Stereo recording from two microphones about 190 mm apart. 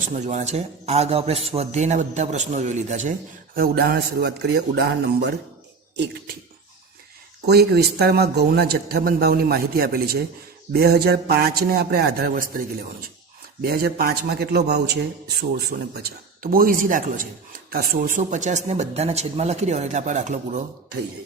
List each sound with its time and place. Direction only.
0.0 s a man's voice: 40° right (ahead or behind)
3.5 s speech: 50° right (ahead or behind)
7.4 s a man's voice: 55° right (ahead or behind)
15.7 s a man's voice: 50° right (ahead or behind)